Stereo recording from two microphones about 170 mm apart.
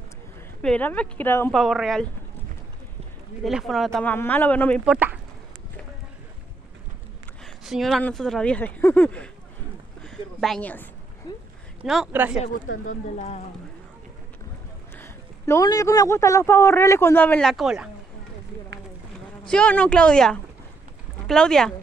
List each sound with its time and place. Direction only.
0.6 s a man's voice: 10° left (ahead or behind)
1.5 s speech: centre (ahead or behind)
3.4 s a man's voice: centre (ahead or behind)
4.8 s speech: 5° right (ahead or behind)
7.4 s speech: centre (ahead or behind)
10.0 s a sound: 5° left (ahead or behind)
11.3 s a sound: 25° left (ahead or behind)
11.8 s speech: 5° right (ahead or behind)
12.4 s speech: 45° left (ahead or behind)
15.0 s a man's voice: 15° left (ahead or behind); by 17.8 s centre (ahead or behind)
19.4 s speech: 5° left (ahead or behind)